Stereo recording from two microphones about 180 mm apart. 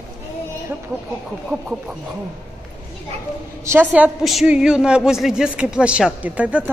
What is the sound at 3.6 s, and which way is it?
A woman's voice, 10° right (ahead or behind).